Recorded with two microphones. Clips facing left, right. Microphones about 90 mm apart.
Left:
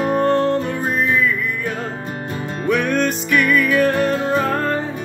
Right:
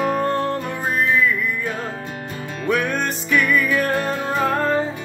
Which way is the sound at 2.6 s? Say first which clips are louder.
Left 3 dB; 15° right (ahead or behind).